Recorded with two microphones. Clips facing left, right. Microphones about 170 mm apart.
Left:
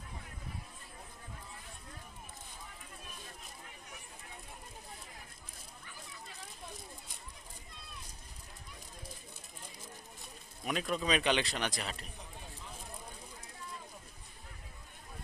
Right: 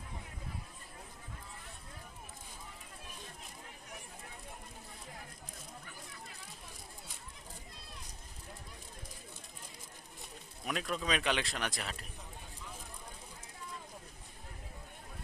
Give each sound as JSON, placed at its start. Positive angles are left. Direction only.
{"t": 10.7, "sound": "speech", "side_deg": 0}